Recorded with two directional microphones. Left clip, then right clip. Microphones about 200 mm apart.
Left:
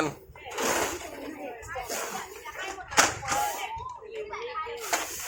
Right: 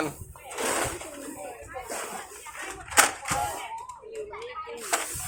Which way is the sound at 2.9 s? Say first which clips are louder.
Right 1 dB; 35° right (ahead or behind).